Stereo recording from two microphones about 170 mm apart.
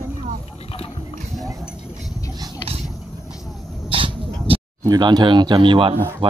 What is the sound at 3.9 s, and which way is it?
Dog, 30° right (ahead or behind).